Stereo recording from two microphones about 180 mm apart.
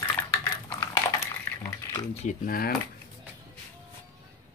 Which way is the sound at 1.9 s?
25° left (ahead or behind).